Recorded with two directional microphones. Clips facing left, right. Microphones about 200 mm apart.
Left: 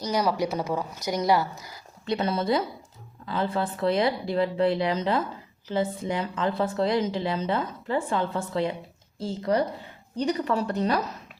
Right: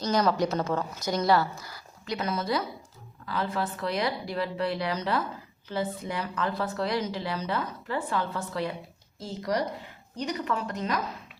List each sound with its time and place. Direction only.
0.0 s a woman's voice: 10° left (ahead or behind)
2.1 s a woman's voice: 30° left (ahead or behind)